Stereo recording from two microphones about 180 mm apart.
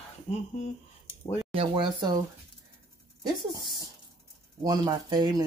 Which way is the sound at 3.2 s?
20° right (ahead or behind).